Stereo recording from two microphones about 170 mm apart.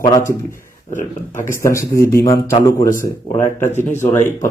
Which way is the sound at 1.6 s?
20° left (ahead or behind).